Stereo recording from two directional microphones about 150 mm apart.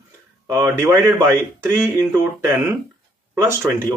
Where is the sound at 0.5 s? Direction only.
15° right (ahead or behind).